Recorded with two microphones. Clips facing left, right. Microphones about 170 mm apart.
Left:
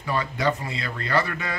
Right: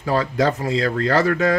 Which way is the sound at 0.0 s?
90° right.